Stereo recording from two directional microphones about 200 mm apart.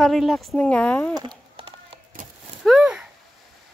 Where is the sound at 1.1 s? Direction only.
20° right (ahead or behind).